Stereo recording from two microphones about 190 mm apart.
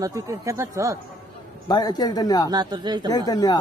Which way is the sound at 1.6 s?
20° left (ahead or behind).